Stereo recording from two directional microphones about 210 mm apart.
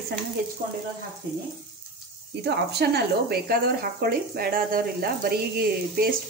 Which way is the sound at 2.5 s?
50° right (ahead or behind).